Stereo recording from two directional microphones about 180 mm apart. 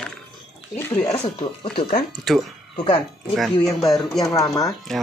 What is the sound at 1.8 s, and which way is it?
Speech, 55° left (ahead or behind).